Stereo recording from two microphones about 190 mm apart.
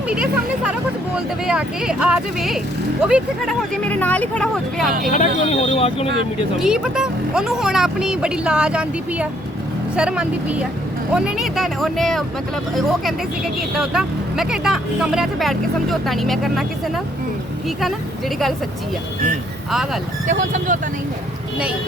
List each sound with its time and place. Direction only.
0.1 s speech: 5° right (ahead or behind)
3.8 s speech: 10° left (ahead or behind)
4.9 s speech: 45° right (ahead or behind)
5.5 s speech: 30° left (ahead or behind)
6.6 s speech: 5° right (ahead or behind)
13.7 s speech: 5° right (ahead or behind)
20.2 s speech: 40° right (ahead or behind)